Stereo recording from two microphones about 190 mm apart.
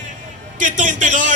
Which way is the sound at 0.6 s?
40° right (ahead or behind).